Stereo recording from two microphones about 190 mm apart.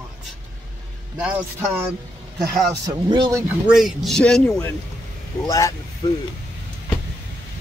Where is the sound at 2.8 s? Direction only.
25° right (ahead or behind).